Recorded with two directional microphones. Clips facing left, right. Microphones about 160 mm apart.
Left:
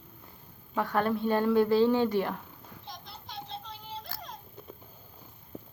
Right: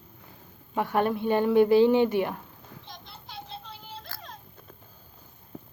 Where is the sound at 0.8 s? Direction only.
20° right (ahead or behind).